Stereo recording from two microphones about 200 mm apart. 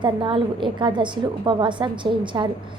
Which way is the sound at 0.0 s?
25° right (ahead or behind).